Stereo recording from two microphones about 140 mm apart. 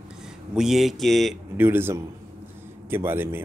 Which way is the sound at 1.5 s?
15° right (ahead or behind).